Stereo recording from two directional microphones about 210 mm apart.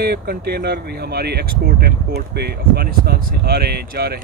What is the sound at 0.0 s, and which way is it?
Speech, 50° right (ahead or behind).